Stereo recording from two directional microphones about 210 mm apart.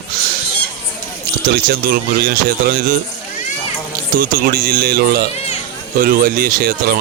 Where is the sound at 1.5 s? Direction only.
45° right (ahead or behind).